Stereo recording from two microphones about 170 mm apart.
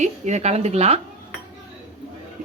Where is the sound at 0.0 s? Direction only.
40° right (ahead or behind).